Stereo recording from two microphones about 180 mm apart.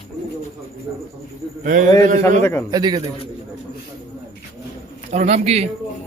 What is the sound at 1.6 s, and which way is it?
Speech, 45° right (ahead or behind).